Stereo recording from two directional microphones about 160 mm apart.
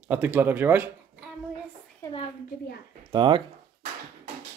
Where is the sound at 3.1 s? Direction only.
30° right (ahead or behind).